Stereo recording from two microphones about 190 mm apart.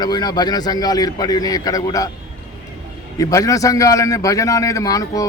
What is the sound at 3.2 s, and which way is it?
A man's voice, 15° left (ahead or behind).